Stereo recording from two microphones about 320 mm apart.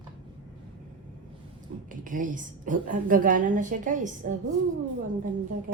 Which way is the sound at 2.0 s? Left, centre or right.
Right.